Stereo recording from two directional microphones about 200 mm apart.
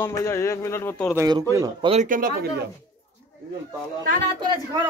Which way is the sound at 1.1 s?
15° right (ahead or behind).